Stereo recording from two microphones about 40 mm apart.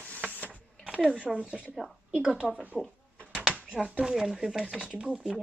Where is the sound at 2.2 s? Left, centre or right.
Right.